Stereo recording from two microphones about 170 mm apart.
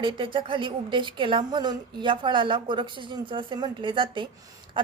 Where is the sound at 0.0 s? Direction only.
30° right (ahead or behind).